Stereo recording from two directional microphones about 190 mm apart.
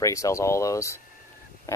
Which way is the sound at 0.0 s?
15° left (ahead or behind).